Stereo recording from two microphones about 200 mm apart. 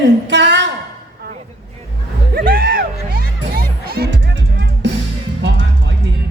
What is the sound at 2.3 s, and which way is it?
Music, 45° right (ahead or behind).